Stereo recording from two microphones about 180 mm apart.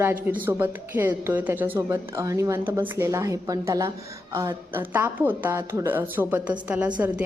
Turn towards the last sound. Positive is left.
turn(degrees=-10)  # may be behind; listen again after turning